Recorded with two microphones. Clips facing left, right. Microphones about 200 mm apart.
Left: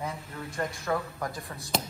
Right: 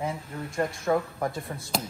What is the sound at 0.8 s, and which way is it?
Speech, 25° right (ahead or behind).